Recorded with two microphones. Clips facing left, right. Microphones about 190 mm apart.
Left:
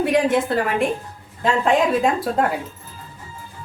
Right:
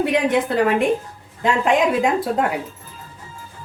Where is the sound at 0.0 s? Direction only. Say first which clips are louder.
Even; 20° right (ahead or behind).